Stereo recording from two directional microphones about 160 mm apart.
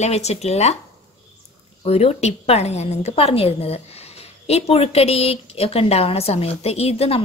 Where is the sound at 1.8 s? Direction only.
40° left (ahead or behind).